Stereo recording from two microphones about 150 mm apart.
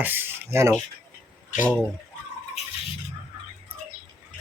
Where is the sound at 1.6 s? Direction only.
10° left (ahead or behind).